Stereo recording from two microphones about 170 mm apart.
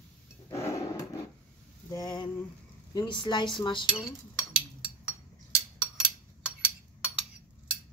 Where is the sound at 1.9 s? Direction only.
25° left (ahead or behind).